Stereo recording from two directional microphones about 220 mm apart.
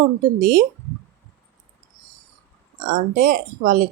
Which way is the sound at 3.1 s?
40° right (ahead or behind).